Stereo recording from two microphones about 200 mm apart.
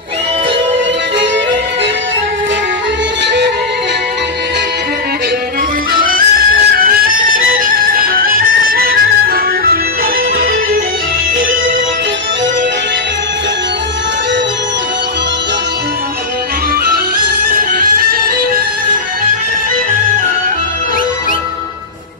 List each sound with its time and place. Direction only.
5.9 s music: 45° right (ahead or behind)